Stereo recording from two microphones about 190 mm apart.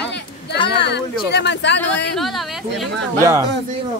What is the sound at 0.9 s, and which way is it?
Speech, 65° left (ahead or behind).